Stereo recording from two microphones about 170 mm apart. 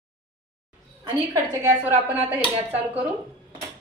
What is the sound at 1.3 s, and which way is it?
Speech, 20° right (ahead or behind).